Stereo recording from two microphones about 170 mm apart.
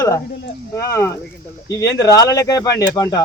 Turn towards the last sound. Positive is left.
turn(degrees=20)  # may be behind; listen again after turning